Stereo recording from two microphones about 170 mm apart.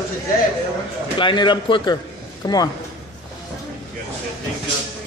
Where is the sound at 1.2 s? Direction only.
30° left (ahead or behind).